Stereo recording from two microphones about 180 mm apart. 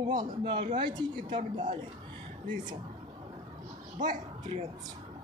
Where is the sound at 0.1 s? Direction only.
25° right (ahead or behind).